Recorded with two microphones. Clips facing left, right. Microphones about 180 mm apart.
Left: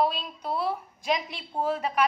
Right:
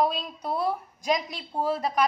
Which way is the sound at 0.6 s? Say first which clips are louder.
Right 3 dB; 45° right (ahead or behind).